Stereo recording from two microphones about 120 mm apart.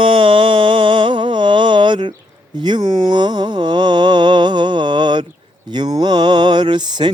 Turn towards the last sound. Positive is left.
turn(degrees=-40)  # may be behind; listen again after turning